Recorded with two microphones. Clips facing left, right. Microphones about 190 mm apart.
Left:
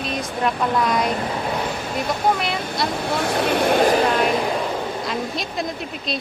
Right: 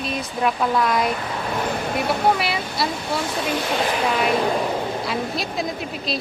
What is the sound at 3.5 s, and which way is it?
Speech, 55° left (ahead or behind).